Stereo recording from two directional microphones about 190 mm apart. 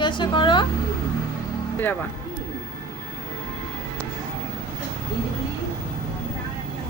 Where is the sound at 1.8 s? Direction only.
10° left (ahead or behind).